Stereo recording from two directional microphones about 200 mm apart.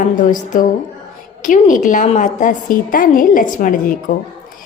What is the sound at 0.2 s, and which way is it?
A woman's voice, 40° left (ahead or behind).